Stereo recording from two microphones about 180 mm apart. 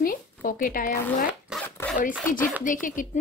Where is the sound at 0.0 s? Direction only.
50° left (ahead or behind).